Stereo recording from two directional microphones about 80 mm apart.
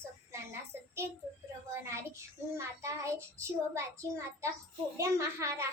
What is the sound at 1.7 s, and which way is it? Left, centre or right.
Child singing, right.